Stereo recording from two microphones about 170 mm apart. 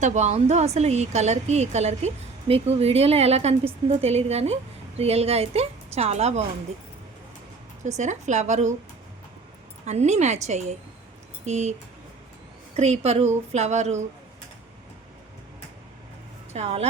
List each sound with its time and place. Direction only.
0.0 s a woman's voice: 45° right (ahead or behind)
7.8 s a woman's voice: 45° right (ahead or behind)
9.8 s a woman's voice: 40° right (ahead or behind)
12.7 s a woman's voice: 40° right (ahead or behind)
16.5 s speech: 40° right (ahead or behind)